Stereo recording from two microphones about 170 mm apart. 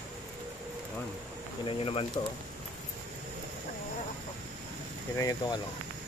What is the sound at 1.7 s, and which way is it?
Speech, 35° left (ahead or behind).